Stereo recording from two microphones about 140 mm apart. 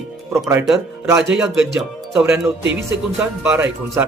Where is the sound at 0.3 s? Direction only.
20° right (ahead or behind).